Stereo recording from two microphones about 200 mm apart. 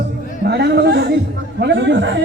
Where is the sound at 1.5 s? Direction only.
60° right (ahead or behind).